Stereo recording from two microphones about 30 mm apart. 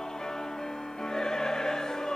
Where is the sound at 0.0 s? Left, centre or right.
Centre.